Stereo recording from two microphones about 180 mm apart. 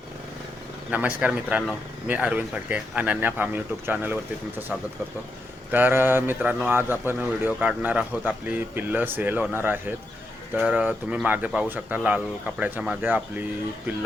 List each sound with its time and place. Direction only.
0.9 s speech: 10° right (ahead or behind)